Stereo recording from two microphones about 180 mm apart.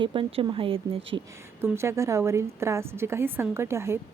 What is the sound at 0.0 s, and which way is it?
Speech, 30° right (ahead or behind).